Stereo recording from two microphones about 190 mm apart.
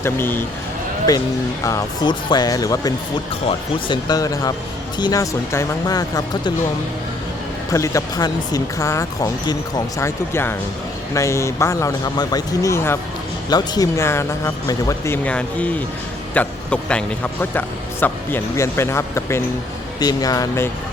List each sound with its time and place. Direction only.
0.0 s speech: 10° left (ahead or behind)
7.7 s a man's voice: 15° left (ahead or behind)